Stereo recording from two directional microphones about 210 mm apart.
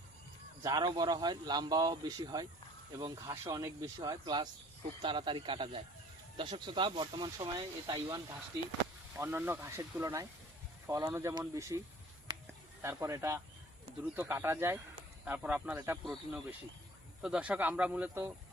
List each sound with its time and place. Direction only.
0.6 s speech: 20° right (ahead or behind)
12.8 s speech: 15° right (ahead or behind)